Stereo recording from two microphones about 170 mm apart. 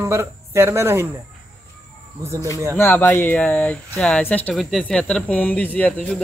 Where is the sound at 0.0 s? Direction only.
15° right (ahead or behind).